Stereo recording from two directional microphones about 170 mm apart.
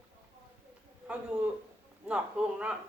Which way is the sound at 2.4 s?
5° right (ahead or behind).